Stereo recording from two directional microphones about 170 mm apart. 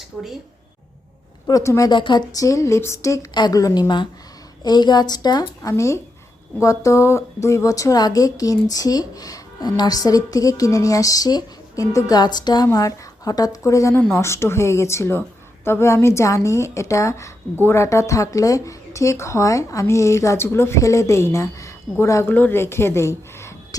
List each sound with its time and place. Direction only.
1.5 s a woman's voice: 20° left (ahead or behind)